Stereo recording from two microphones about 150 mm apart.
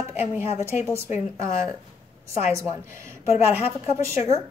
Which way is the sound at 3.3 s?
40° left (ahead or behind).